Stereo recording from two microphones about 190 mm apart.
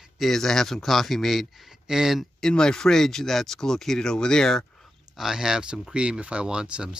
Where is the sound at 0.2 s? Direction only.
Centre (ahead or behind).